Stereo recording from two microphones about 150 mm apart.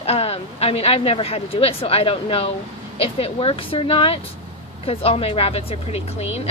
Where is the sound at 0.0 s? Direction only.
40° left (ahead or behind).